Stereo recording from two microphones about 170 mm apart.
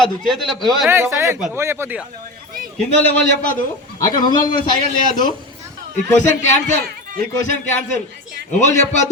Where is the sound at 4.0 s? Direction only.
25° left (ahead or behind).